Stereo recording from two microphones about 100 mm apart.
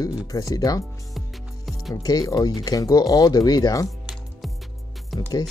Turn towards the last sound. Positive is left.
turn(degrees=0)  # may be behind; listen again after turning